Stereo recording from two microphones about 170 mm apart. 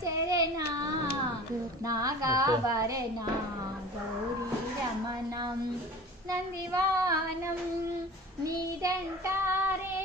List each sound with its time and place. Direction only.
0.0 s child singing: 20° right (ahead or behind)
1.9 s music: 20° right (ahead or behind)
6.3 s child singing: 20° right (ahead or behind)
8.5 s child singing: 20° right (ahead or behind)